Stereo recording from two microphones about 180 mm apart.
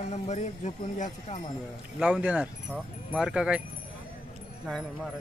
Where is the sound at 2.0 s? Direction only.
5° right (ahead or behind).